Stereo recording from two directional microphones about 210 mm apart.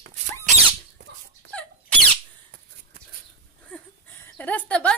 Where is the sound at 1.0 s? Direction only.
55° right (ahead or behind).